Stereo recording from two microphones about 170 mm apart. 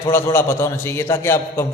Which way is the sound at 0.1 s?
15° left (ahead or behind).